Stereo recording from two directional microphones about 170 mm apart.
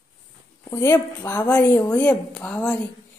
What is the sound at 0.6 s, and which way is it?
A woman's voice, 15° left (ahead or behind).